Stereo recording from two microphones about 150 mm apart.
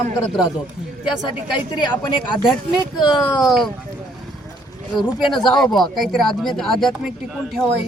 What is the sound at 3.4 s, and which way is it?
Speech, centre (ahead or behind).